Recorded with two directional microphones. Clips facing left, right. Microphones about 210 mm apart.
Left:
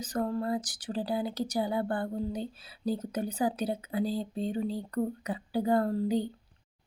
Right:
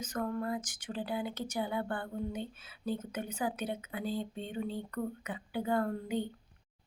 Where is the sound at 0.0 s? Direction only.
35° left (ahead or behind).